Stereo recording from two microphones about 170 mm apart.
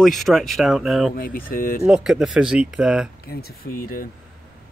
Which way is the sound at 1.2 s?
55° left (ahead or behind).